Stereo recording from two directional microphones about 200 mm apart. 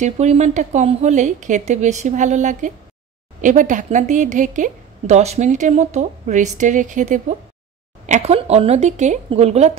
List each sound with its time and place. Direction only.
0.0 s speech: 35° right (ahead or behind)